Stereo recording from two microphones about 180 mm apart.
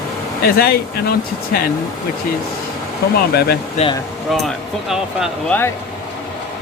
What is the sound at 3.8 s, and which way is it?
Speech, 40° left (ahead or behind).